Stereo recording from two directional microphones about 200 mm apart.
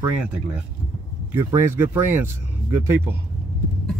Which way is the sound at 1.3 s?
10° right (ahead or behind).